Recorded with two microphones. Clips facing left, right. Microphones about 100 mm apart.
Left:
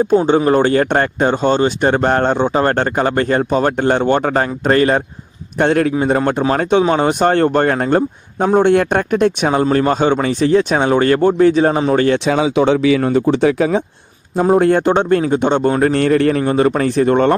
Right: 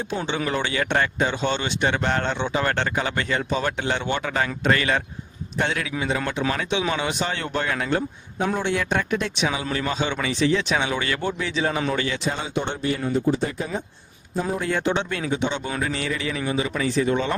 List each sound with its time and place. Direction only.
0.0 s speech: 45° left (ahead or behind)
5.5 s speech: 55° left (ahead or behind)
12.2 s speech: 90° left
14.5 s speech: 55° left (ahead or behind)